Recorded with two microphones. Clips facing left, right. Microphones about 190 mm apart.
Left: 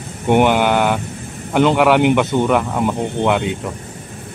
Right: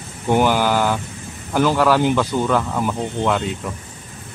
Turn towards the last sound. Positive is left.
turn(degrees=20)  # may be behind; listen again after turning